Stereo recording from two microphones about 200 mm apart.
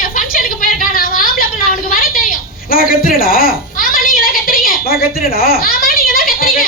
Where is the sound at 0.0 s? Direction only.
45° left (ahead or behind).